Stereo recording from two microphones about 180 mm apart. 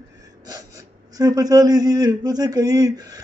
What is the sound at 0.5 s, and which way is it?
Speech, 20° right (ahead or behind).